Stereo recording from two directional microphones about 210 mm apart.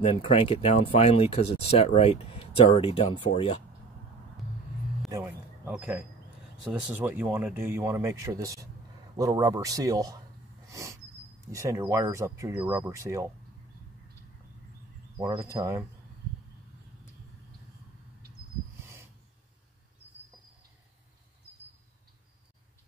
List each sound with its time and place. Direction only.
0.0 s speech: 25° left (ahead or behind)
5.7 s speech: 5° right (ahead or behind)
10.7 s a sound: 15° right (ahead or behind)
11.4 s speech: 15° right (ahead or behind)
15.1 s speech: 15° right (ahead or behind)